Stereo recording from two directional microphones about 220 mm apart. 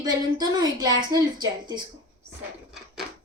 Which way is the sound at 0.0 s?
15° right (ahead or behind).